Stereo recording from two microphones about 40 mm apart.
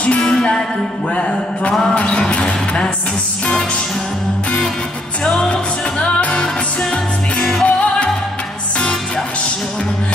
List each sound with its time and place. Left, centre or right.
0.0 s music: left
2.0 s a sound: left
5.2 s music: left
6.4 s music: centre
7.6 s music: left